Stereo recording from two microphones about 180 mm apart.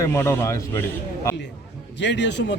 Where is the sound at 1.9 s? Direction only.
75° left (ahead or behind).